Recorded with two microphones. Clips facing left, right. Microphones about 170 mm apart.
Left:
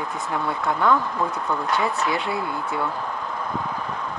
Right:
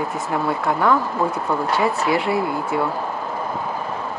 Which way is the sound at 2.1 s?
65° right (ahead or behind).